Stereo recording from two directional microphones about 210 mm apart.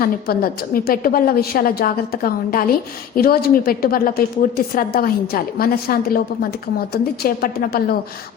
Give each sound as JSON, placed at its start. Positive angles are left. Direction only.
{"t": 0.0, "sound": "a woman's voice", "side_deg": 45}